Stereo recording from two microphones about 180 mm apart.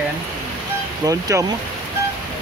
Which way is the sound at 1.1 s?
20° right (ahead or behind).